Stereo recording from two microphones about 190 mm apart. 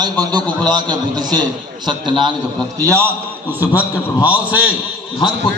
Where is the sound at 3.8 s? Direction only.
5° right (ahead or behind).